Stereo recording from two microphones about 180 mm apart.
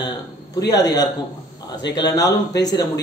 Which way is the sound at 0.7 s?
20° left (ahead or behind).